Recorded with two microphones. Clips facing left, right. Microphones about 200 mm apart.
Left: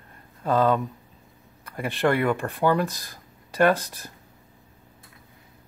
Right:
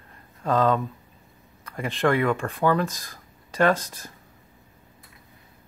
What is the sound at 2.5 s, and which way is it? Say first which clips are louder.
Speech: even; 60° left (ahead or behind).